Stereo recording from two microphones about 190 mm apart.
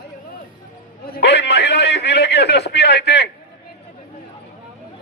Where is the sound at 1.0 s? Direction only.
55° left (ahead or behind).